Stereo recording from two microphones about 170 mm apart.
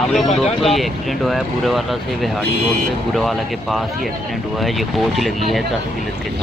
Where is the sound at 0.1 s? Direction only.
Centre (ahead or behind).